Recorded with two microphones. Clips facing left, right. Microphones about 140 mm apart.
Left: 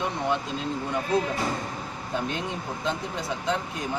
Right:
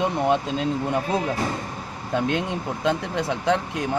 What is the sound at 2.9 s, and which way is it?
Speech, 65° right (ahead or behind).